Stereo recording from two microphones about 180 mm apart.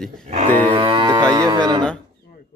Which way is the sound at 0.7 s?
30° right (ahead or behind).